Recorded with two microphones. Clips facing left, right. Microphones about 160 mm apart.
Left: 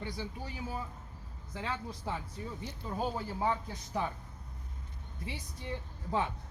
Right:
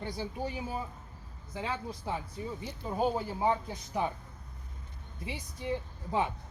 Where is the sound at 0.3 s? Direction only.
20° right (ahead or behind).